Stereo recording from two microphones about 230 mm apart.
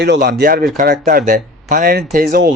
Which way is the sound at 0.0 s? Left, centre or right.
Right.